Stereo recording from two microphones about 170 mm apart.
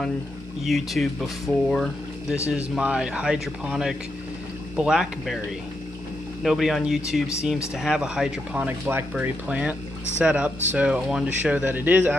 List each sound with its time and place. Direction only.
0.6 s speech: centre (ahead or behind)
6.4 s speech: centre (ahead or behind)